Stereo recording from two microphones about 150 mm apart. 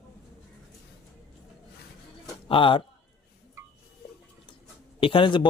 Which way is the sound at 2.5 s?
35° left (ahead or behind).